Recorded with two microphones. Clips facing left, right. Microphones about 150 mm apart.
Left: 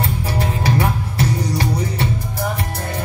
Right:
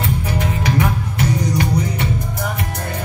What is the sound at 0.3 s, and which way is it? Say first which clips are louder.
Music: left 2 dB; 35° left (ahead or behind).